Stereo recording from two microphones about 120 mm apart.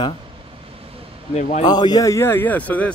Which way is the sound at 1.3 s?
85° left.